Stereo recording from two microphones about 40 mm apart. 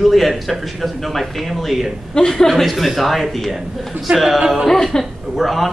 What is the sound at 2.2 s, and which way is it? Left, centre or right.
A man's voice, centre.